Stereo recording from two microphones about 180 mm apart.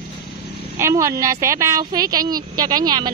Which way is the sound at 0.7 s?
15° right (ahead or behind).